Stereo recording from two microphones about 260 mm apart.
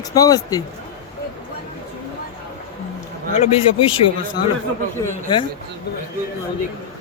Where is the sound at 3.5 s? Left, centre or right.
Left.